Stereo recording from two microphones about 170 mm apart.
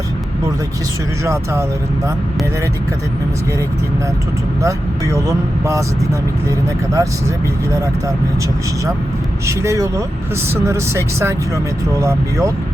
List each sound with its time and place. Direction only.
1.2 s speech: 15° right (ahead or behind)
4.6 s speech: 15° right (ahead or behind)
9.5 s speech: 15° right (ahead or behind)